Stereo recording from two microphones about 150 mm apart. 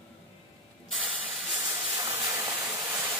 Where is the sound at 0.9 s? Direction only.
5° right (ahead or behind).